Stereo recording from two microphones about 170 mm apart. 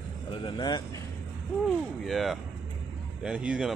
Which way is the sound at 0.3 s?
30° left (ahead or behind).